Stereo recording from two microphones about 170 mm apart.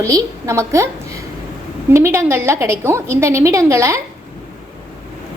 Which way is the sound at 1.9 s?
15° right (ahead or behind).